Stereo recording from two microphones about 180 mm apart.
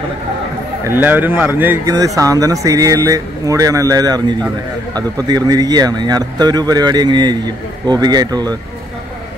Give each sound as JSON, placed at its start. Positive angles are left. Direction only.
{"t": 0.8, "sound": "speech", "side_deg": -10}